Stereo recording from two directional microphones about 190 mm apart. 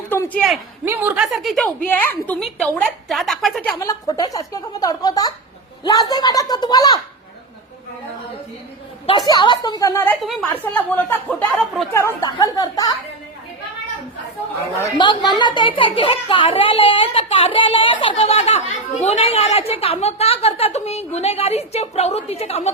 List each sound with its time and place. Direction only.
0.1 s a sound: 10° left (ahead or behind)
0.9 s a woman's voice: 10° right (ahead or behind)
3.8 s a woman's voice: 20° left (ahead or behind)
9.0 s a woman's voice: 20° left (ahead or behind)
14.9 s a woman's voice: 25° left (ahead or behind)